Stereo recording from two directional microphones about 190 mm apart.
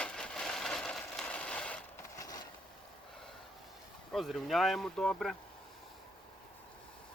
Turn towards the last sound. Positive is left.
turn(degrees=0)  # may be behind; listen again after turning